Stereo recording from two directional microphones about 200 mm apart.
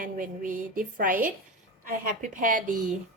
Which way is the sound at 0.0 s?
45° right (ahead or behind).